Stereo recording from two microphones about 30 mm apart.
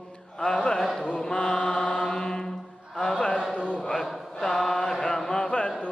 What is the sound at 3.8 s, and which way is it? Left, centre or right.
Mantra, centre.